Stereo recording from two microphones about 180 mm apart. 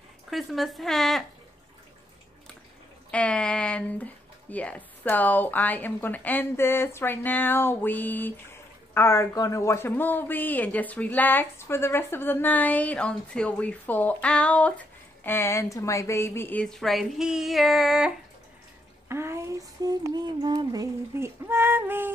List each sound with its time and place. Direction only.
0.3 s speech: centre (ahead or behind)
3.1 s speech: 5° left (ahead or behind)
19.0 s speech: 15° right (ahead or behind)
20.4 s female singing: 20° right (ahead or behind)